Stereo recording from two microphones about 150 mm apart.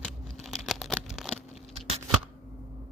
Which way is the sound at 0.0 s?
5° left (ahead or behind).